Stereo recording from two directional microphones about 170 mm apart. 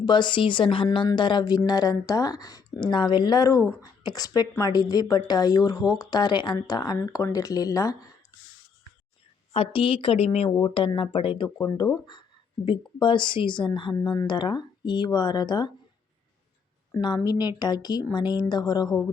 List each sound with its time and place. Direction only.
0.0 s a woman's voice: 25° left (ahead or behind)
9.5 s speech: 35° left (ahead or behind)
12.6 s a woman's voice: 30° left (ahead or behind)
16.9 s a woman's voice: 25° left (ahead or behind)